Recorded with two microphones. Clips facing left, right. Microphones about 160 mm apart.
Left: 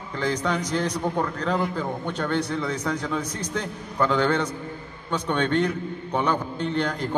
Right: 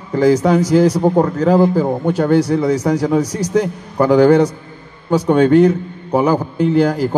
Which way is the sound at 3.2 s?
80° right.